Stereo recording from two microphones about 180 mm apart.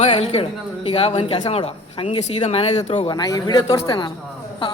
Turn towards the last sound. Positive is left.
turn(degrees=25)  # may be behind; listen again after turning